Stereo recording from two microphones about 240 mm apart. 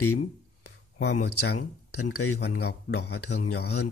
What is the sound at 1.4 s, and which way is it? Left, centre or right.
Speech, left.